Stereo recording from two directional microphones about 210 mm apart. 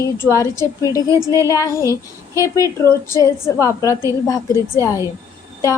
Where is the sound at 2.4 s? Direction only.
15° left (ahead or behind).